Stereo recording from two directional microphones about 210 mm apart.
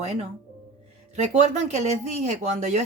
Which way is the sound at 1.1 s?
35° right (ahead or behind).